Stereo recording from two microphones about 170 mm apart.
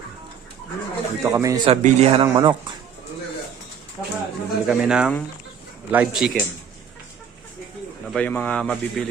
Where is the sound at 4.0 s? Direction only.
20° left (ahead or behind).